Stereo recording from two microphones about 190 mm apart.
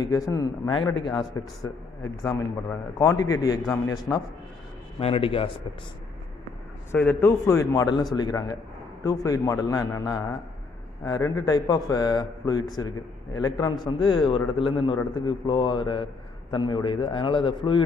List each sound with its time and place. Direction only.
0.0 s a man's voice: 20° left (ahead or behind)
5.0 s a man's voice: 30° left (ahead or behind)
6.9 s a man's voice: 10° left (ahead or behind)